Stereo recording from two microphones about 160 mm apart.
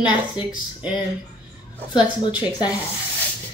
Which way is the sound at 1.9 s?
30° left (ahead or behind).